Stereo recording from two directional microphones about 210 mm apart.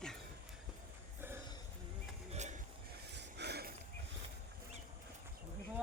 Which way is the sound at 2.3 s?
35° right (ahead or behind).